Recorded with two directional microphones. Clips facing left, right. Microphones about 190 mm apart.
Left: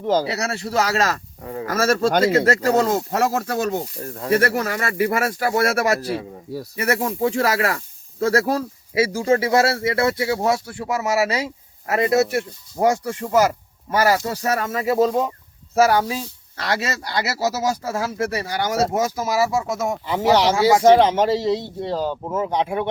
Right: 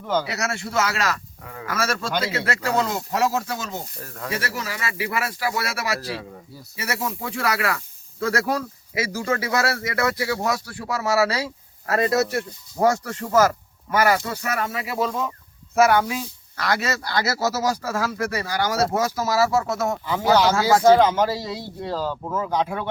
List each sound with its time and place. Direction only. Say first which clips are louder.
0.0 s speech: left 4 dB; 35° left (ahead or behind); by 3.8 s 55° left (ahead or behind)
4.0 s speech: left 5 dB; 30° left (ahead or behind)
4.3 s speech: left 10 dB; 55° left (ahead or behind)
7.0 s speech: left 8 dB; 30° left (ahead or behind)
7.3 s speech: left 4 dB; 40° left (ahead or behind); by 13.6 s 15° left (ahead or behind)
13.9 s speech: left 1 dB; 35° left (ahead or behind)